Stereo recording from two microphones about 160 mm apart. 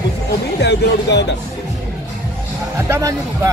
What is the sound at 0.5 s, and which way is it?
Speech, 90° left.